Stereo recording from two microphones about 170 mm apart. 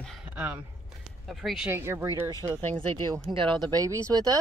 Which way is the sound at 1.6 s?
15° right (ahead or behind).